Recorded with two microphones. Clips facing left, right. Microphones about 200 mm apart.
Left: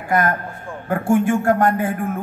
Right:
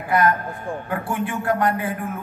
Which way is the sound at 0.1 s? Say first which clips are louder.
Even; 45° left (ahead or behind).